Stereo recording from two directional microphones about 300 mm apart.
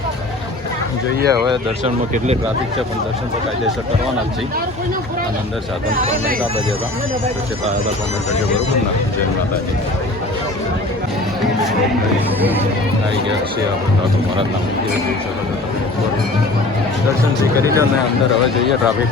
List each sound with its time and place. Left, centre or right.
1.3 s speech: centre
6.0 s speech: right
17.6 s speech: centre